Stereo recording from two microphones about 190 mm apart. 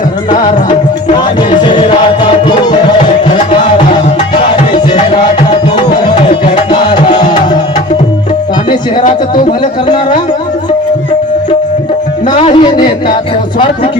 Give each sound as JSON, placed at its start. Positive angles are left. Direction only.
{"t": 1.6, "sound": "music", "side_deg": 25}
{"t": 6.7, "sound": "music", "side_deg": 25}
{"t": 12.4, "sound": "speech", "side_deg": 30}